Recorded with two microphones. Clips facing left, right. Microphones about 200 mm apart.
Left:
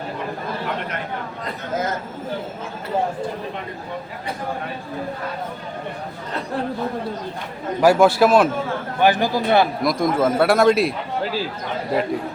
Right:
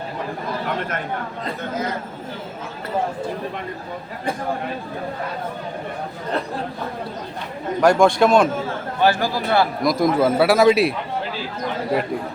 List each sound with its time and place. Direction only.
7.8 s a man's voice: 5° left (ahead or behind)
9.0 s a man's voice: 15° left (ahead or behind)
9.8 s a man's voice: centre (ahead or behind)